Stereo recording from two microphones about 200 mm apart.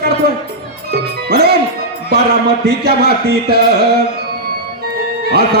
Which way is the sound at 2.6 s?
50° right (ahead or behind).